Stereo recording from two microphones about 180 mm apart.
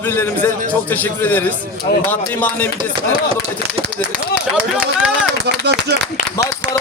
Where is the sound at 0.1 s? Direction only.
10° left (ahead or behind).